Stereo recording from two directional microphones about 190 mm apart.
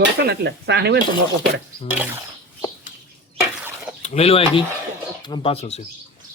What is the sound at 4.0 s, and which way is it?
Speech, 35° left (ahead or behind).